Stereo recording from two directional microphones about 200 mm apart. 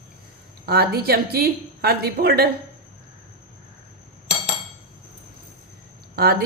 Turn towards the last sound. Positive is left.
turn(degrees=-50)  # may be behind; listen again after turning